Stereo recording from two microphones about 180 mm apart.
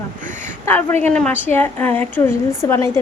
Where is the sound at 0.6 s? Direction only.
10° left (ahead or behind).